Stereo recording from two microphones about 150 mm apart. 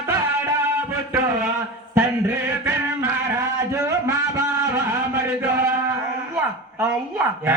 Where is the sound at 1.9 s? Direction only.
15° right (ahead or behind).